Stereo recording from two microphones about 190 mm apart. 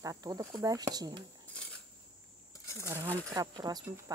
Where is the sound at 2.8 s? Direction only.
15° right (ahead or behind).